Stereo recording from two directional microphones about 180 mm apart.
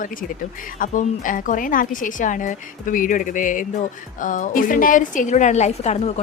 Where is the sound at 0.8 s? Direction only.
50° left (ahead or behind).